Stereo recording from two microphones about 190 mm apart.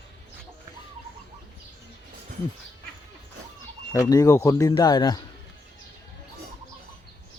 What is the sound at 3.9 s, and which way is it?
Speech, 20° left (ahead or behind).